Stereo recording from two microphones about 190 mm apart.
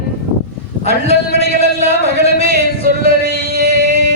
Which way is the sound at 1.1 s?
35° left (ahead or behind).